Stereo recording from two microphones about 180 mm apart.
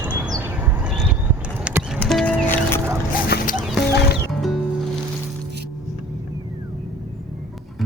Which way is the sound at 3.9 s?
65° left (ahead or behind).